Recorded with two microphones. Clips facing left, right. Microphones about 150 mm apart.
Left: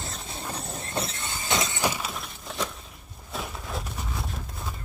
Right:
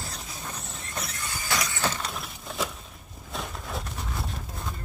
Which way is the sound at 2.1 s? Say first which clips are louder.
Even; centre (ahead or behind).